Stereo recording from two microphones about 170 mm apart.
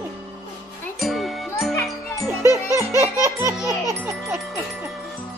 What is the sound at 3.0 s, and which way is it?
Music, 15° right (ahead or behind).